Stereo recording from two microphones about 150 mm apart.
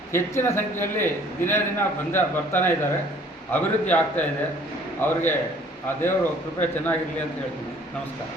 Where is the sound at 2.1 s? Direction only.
15° left (ahead or behind).